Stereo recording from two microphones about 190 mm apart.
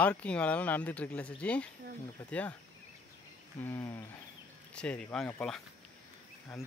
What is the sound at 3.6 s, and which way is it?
Speech, 15° left (ahead or behind).